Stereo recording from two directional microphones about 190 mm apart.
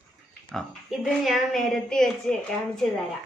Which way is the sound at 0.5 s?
Centre (ahead or behind).